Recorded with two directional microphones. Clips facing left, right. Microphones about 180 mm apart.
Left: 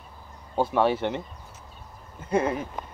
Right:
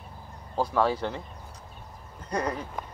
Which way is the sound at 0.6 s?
25° left (ahead or behind).